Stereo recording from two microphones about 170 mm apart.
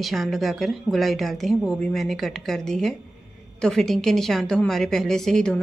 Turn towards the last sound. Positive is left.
turn(degrees=5)  # may be behind; listen again after turning